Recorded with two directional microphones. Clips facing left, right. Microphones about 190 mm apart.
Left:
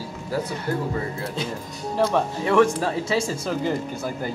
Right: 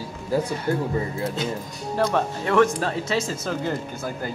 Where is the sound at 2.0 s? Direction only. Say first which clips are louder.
Left 1 dB; 5° left (ahead or behind).